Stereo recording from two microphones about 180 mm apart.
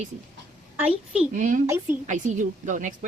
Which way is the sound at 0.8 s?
5° right (ahead or behind).